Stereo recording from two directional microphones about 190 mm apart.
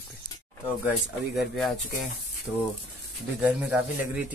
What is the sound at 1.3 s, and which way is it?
Speech, centre (ahead or behind).